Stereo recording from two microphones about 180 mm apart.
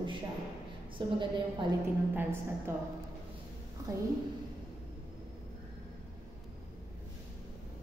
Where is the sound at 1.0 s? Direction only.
25° right (ahead or behind).